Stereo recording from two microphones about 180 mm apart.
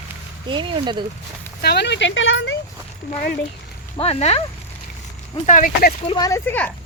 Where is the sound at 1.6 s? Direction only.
70° left (ahead or behind); by 2.5 s 90° left.